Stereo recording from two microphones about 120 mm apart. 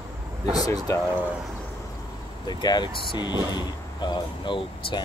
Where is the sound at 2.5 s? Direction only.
35° left (ahead or behind).